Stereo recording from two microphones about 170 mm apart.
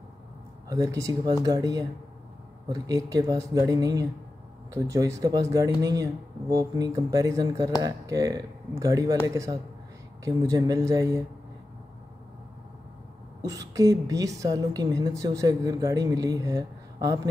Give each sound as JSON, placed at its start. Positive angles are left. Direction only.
{"t": 0.7, "sound": "a woman's voice", "side_deg": -20}
{"t": 13.4, "sound": "a woman's voice", "side_deg": -20}